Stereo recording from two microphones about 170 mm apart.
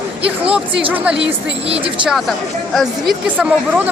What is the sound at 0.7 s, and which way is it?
Speech, 30° right (ahead or behind).